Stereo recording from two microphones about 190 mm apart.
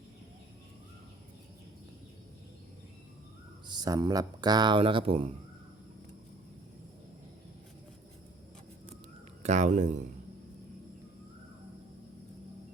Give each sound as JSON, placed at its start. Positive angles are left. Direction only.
{"t": 3.7, "sound": "speech", "side_deg": -20}
{"t": 9.4, "sound": "speech", "side_deg": -40}